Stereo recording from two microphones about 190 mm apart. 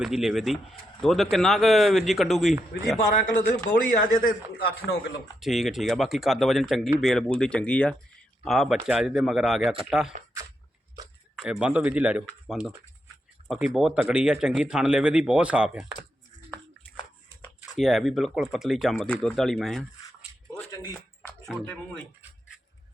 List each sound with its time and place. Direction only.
0.0 s speech: centre (ahead or behind)
3.0 s speech: 45° left (ahead or behind)
5.4 s speech: centre (ahead or behind)
10.1 s a sound: 40° right (ahead or behind)
11.6 s speech: 5° right (ahead or behind)
17.7 s speech: centre (ahead or behind)
20.6 s a sound: 15° left (ahead or behind)